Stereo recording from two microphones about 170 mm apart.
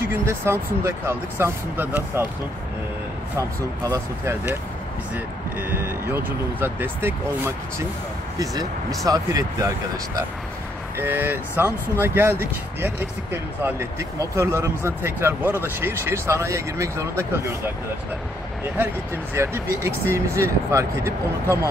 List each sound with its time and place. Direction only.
0.0 s speech: 15° right (ahead or behind)
3.3 s speech: 20° right (ahead or behind)
11.0 s speech: 10° right (ahead or behind)
19.3 s speech: 15° right (ahead or behind)